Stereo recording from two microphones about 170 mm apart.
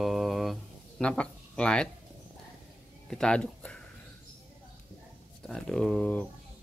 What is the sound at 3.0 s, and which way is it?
Speech, 5° left (ahead or behind).